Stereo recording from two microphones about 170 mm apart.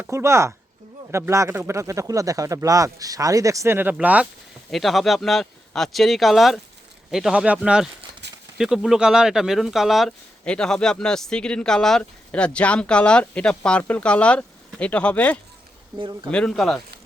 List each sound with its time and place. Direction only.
0.0 s speech: 15° right (ahead or behind)
8.2 s a sound: 90° right
8.5 s speech: centre (ahead or behind)
16.0 s speech: 25° right (ahead or behind)
16.3 s speech: 5° left (ahead or behind)